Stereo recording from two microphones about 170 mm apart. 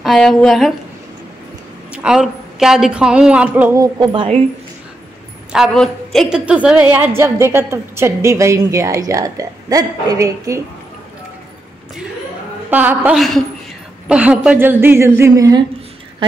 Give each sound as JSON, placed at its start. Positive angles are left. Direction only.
{"t": 0.0, "sound": "a woman's voice", "side_deg": 0}
{"t": 1.9, "sound": "a woman's voice", "side_deg": -5}
{"t": 3.8, "sound": "speech", "side_deg": -25}
{"t": 5.5, "sound": "a woman's voice", "side_deg": 0}
{"t": 12.6, "sound": "a woman's voice", "side_deg": -10}